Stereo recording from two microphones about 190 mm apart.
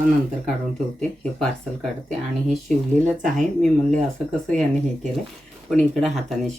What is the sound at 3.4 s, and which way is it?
Speech, centre (ahead or behind).